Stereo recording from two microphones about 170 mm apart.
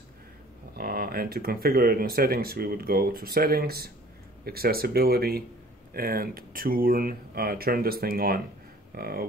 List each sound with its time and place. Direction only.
0.7 s speech: 60° right (ahead or behind)